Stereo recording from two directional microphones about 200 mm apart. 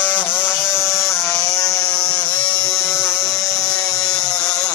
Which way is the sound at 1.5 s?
15° left (ahead or behind).